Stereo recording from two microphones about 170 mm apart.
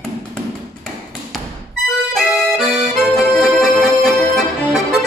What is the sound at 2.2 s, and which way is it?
Accordion, centre (ahead or behind).